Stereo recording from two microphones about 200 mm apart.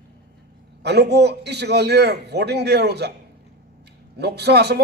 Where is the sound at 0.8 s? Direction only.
55° right (ahead or behind).